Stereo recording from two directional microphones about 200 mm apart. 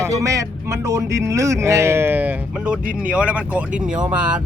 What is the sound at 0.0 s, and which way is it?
Speech, 15° right (ahead or behind).